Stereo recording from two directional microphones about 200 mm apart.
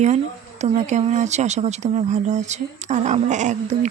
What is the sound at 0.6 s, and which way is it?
Speech, 35° right (ahead or behind).